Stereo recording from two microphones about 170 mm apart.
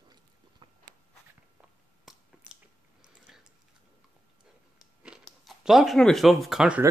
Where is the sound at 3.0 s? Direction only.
5° right (ahead or behind).